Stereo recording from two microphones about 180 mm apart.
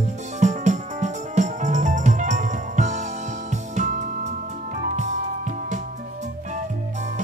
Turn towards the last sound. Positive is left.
turn(degrees=-40)  # may be behind; listen again after turning